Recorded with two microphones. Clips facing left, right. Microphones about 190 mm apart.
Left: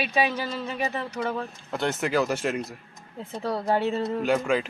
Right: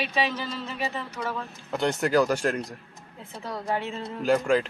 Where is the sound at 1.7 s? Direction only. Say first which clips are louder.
Right 2 dB; centre (ahead or behind).